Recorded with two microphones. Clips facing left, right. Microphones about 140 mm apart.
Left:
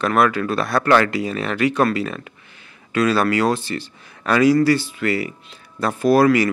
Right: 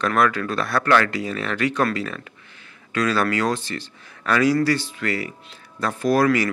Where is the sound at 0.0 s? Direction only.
10° left (ahead or behind).